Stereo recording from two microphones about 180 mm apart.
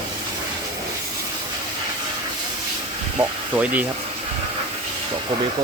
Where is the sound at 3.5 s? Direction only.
10° right (ahead or behind).